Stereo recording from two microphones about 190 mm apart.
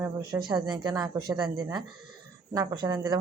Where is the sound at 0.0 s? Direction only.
15° right (ahead or behind).